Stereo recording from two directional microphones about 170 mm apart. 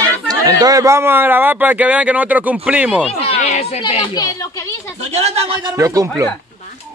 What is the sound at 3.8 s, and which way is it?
Speech, 30° left (ahead or behind).